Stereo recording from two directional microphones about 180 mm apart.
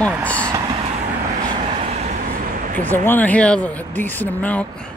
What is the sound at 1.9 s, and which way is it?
Vehicle, 45° right (ahead or behind).